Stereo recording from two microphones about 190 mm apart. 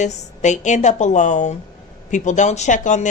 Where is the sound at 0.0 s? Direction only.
40° left (ahead or behind).